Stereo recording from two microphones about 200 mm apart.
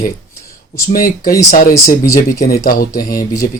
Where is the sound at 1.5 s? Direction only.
45° left (ahead or behind).